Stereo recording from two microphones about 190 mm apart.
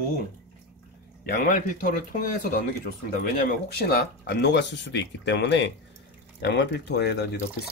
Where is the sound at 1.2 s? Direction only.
50° left (ahead or behind).